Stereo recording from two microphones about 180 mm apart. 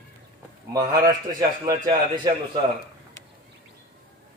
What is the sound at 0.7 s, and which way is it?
A man's voice, 20° right (ahead or behind).